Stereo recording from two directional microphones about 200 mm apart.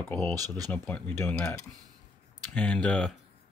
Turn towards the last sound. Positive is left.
turn(degrees=5)  # may be behind; listen again after turning